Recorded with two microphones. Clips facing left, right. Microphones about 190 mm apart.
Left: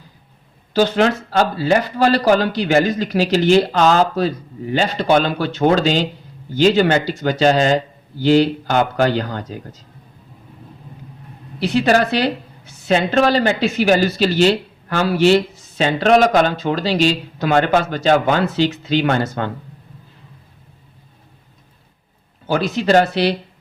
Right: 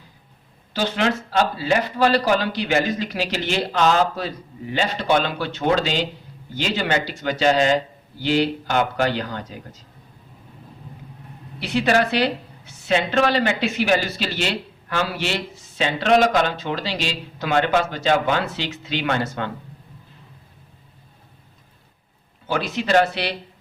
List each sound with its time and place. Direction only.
0.7 s a man's voice: 45° left (ahead or behind)
11.6 s a man's voice: 40° left (ahead or behind)
22.4 s a man's voice: 40° left (ahead or behind)